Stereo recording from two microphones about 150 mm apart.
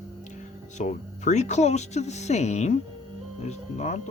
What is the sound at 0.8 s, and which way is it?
Speech, 50° left (ahead or behind).